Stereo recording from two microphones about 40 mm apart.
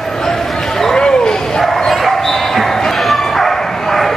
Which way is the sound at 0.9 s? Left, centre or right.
Centre.